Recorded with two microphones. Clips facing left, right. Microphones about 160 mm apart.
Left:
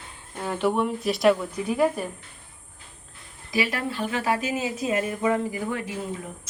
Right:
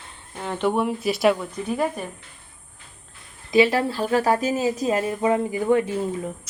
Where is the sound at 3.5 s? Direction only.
30° right (ahead or behind).